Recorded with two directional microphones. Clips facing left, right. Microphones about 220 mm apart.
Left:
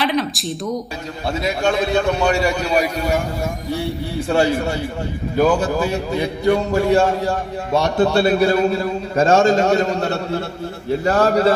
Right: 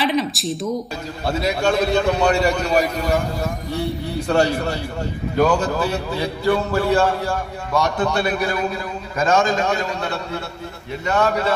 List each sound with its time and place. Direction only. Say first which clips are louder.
0.0 s a sound: even; centre (ahead or behind)
1.4 s a man's voice: even; centre (ahead or behind)
5.4 s a man's voice: left 2 dB; 10° left (ahead or behind); by 9.8 s 30° left (ahead or behind)
9.8 s a man's voice: left 5 dB; 45° left (ahead or behind)
11.0 s a man's voice: left 2 dB; 35° left (ahead or behind)